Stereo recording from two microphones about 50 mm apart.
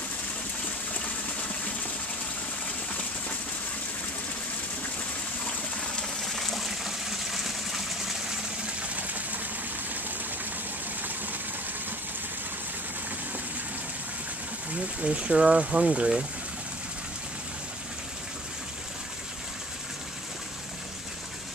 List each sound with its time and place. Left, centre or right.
5.4 s water: left
6.2 s water: centre
8.8 s a sound: right
15.0 s speech: right